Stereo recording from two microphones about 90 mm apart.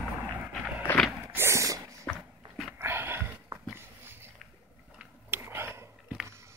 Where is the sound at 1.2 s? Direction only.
25° right (ahead or behind).